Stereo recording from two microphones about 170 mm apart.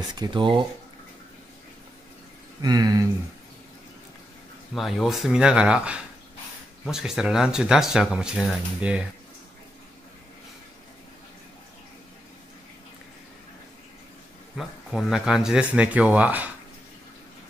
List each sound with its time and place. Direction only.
0.1 s speech: 25° right (ahead or behind)
2.6 s speech: 25° right (ahead or behind)
4.7 s speech: centre (ahead or behind)
14.6 s speech: centre (ahead or behind)